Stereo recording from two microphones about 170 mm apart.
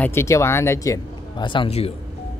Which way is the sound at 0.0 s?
15° left (ahead or behind).